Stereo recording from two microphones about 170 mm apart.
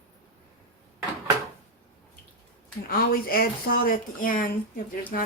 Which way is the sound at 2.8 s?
60° left (ahead or behind).